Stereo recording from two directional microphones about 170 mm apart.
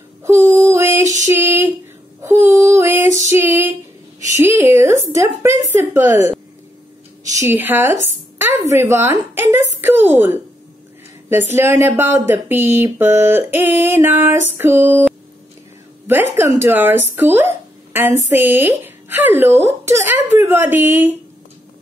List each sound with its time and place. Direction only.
0.2 s female singing: 15° right (ahead or behind)
4.4 s a woman's voice: 15° right (ahead or behind)
16.1 s speech: 10° right (ahead or behind)